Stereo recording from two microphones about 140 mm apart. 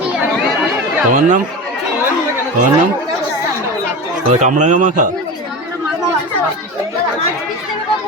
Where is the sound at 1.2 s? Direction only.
65° right (ahead or behind).